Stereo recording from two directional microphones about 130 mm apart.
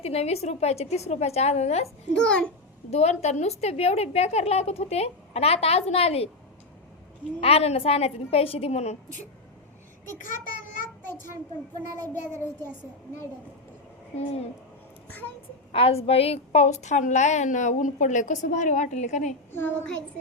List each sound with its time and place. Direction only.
0.0 s a woman's voice: 50° left (ahead or behind)
2.1 s a child's voice: 5° left (ahead or behind)
2.9 s a woman's voice: 55° left (ahead or behind)
7.4 s a woman's voice: 50° left (ahead or behind)
10.3 s child singing: 90° left
14.2 s a woman's voice: 55° left (ahead or behind)
15.7 s a woman's voice: 50° left (ahead or behind); by 19.3 s 65° left (ahead or behind)
19.5 s a child's voice: 15° left (ahead or behind)